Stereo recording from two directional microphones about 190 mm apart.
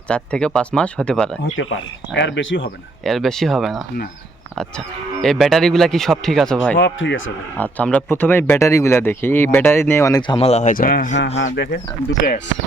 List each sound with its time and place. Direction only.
0.1 s speech: 5° left (ahead or behind)
2.1 s speech: 70° left (ahead or behind)
3.0 s speech: centre (ahead or behind)
5.2 s speech: centre (ahead or behind)
6.7 s speech: 70° left (ahead or behind)
7.6 s speech: 5° left (ahead or behind); by 11.1 s 50° left (ahead or behind)
11.3 s speech: 65° left (ahead or behind)